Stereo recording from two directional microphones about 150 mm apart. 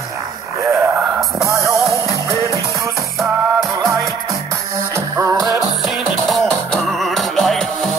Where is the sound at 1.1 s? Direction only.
5° right (ahead or behind).